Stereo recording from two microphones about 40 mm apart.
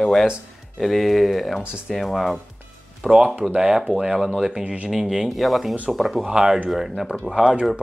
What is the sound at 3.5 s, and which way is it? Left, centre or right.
Speech, centre.